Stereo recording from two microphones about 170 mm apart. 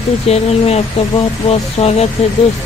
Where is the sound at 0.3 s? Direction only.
40° left (ahead or behind).